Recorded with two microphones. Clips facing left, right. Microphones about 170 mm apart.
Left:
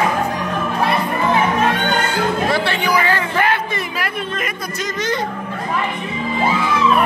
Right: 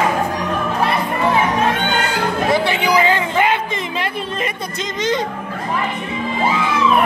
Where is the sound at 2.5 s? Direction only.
15° right (ahead or behind).